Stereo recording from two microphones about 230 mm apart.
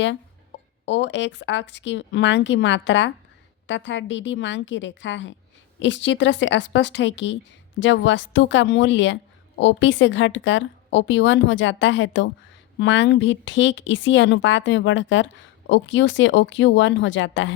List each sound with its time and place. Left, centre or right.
0.9 s speech: left